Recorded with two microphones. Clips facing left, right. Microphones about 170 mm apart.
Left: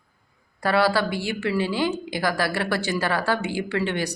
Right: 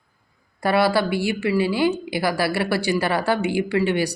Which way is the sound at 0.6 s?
15° right (ahead or behind).